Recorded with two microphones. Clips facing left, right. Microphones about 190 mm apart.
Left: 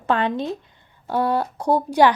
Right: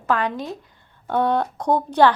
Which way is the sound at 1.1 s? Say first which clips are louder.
Right 1 dB; 5° left (ahead or behind).